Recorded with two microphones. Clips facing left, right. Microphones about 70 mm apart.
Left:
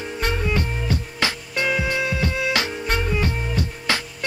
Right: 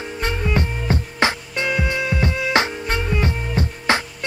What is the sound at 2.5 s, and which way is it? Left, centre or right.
Music, right.